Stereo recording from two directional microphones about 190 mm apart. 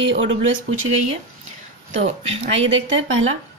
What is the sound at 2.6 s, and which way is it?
Speech, 90° right.